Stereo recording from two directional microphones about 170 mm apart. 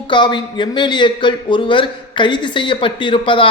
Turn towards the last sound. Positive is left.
turn(degrees=30)  # may be behind; listen again after turning